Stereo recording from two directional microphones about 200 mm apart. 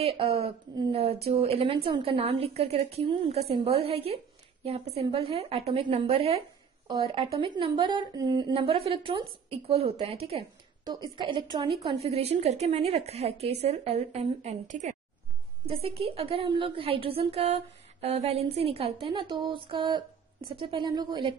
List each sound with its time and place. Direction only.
0.0 s a woman's voice: 30° right (ahead or behind)